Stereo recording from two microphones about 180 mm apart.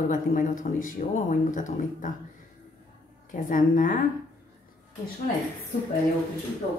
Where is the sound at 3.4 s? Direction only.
50° left (ahead or behind).